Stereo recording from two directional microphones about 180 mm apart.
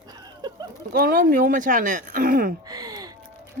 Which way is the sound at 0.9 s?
55° right (ahead or behind).